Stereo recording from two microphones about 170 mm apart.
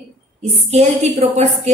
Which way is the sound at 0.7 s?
40° right (ahead or behind).